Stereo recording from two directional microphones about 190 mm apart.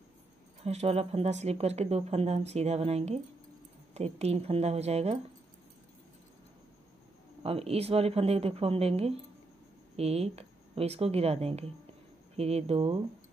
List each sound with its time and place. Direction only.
0.7 s speech: 35° right (ahead or behind)
7.4 s speech: 30° right (ahead or behind)